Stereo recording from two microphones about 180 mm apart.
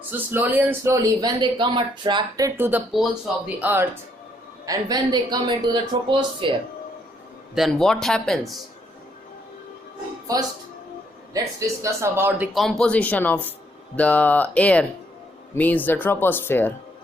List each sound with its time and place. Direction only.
0.1 s speech: 10° right (ahead or behind)
4.6 s speech: 20° right (ahead or behind)
7.5 s speech: centre (ahead or behind)
11.3 s speech: 15° right (ahead or behind)
12.5 s speech: centre (ahead or behind)